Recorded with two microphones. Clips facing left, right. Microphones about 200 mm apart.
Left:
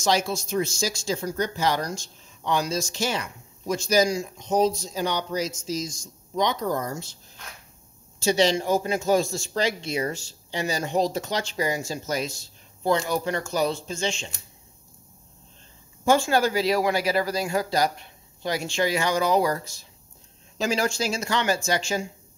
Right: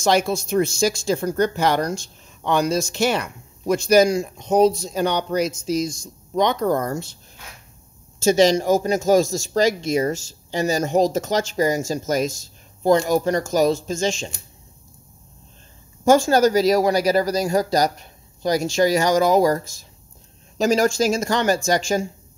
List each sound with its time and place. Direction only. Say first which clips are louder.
0.0 s speech: right 5 dB; 55° right (ahead or behind)
8.2 s speech: right 6 dB; 45° right (ahead or behind)
16.1 s speech: right 6 dB; 45° right (ahead or behind)